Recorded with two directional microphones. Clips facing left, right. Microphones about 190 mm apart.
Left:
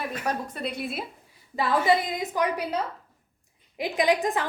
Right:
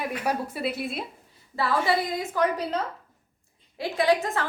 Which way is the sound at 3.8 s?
15° left (ahead or behind).